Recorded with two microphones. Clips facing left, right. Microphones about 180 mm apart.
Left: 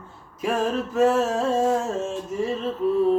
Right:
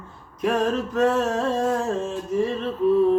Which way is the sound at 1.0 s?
5° left (ahead or behind).